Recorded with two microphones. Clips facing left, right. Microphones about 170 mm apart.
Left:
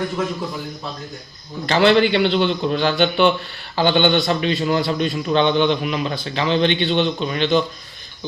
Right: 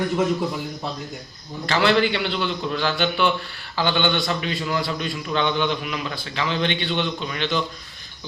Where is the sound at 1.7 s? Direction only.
25° left (ahead or behind).